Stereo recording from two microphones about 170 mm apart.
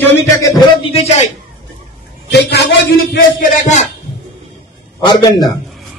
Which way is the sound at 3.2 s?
50° left (ahead or behind).